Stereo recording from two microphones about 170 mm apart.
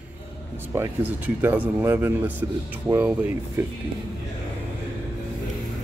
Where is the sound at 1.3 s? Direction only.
10° right (ahead or behind).